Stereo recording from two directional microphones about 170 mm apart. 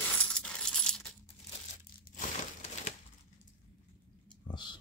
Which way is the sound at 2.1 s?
40° left (ahead or behind).